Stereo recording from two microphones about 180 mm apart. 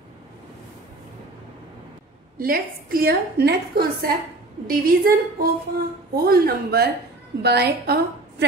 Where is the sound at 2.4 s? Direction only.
55° right (ahead or behind).